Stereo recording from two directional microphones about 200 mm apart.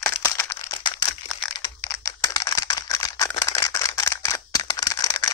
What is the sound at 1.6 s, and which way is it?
Computer keyboard, 20° left (ahead or behind).